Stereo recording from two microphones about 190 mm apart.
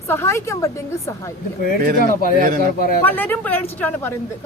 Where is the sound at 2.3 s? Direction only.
45° right (ahead or behind).